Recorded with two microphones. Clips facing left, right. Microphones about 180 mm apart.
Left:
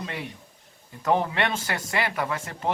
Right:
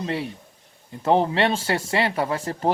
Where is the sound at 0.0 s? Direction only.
30° right (ahead or behind).